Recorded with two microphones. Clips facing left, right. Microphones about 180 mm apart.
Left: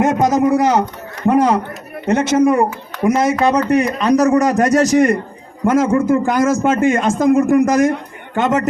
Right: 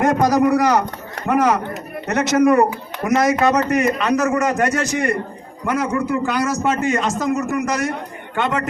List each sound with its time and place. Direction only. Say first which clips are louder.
0.0 s a man's voice: left 1 dB; 25° left (ahead or behind); by 8.6 s 40° left (ahead or behind)